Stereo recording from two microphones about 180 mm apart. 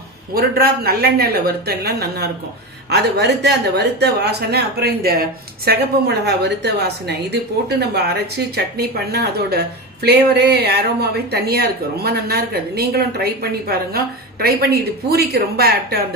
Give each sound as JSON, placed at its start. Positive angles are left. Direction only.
{"t": 0.3, "sound": "a woman's voice", "side_deg": -60}